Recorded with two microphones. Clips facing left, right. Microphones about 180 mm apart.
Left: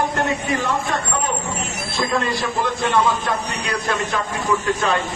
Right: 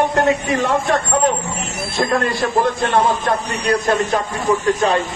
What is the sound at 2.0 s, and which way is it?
Speech, 60° right (ahead or behind).